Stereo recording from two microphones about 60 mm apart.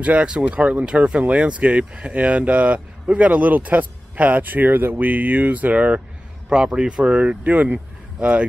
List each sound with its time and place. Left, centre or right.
0.0 s speech: centre